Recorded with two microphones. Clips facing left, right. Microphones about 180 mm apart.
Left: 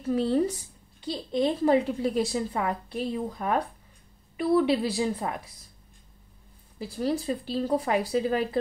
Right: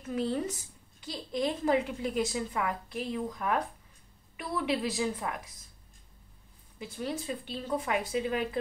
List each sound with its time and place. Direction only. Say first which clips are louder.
0.0 s a woman's voice: left 7 dB; 30° left (ahead or behind)
6.8 s a woman's voice: left 7 dB; 35° left (ahead or behind)